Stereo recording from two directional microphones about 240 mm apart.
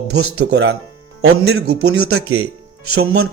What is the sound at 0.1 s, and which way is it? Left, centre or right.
Speech, right.